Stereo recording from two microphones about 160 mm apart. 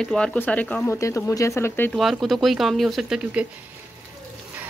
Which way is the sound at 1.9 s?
Centre (ahead or behind).